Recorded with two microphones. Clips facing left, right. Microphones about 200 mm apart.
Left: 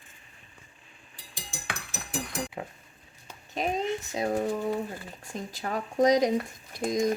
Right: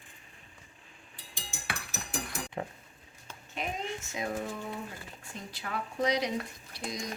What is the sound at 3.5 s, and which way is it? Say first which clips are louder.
Speech: left 8 dB; 35° left (ahead or behind).